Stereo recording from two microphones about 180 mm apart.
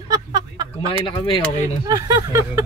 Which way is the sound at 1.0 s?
25° left (ahead or behind).